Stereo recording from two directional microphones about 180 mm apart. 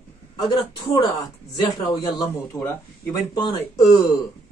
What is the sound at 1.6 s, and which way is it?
Speech, 20° left (ahead or behind).